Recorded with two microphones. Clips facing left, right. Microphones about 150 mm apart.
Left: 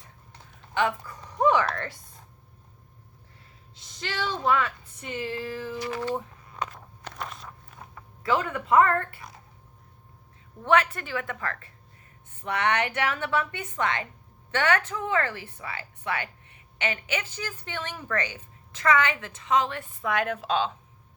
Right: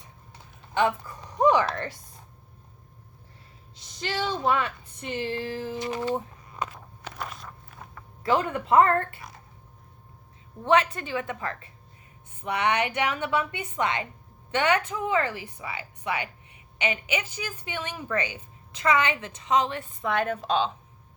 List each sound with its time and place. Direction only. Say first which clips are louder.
0.7 s a sound: right 2 dB; 25° right (ahead or behind)
4.2 s speech: even; 25° right (ahead or behind)
6.7 s walk: right 1 dB; 5° right (ahead or behind)
8.2 s speech: right 2 dB; 30° right (ahead or behind)
10.6 s a woman's voice: right 1 dB; 20° right (ahead or behind)
20.2 s a woman's voice: right 1 dB; centre (ahead or behind)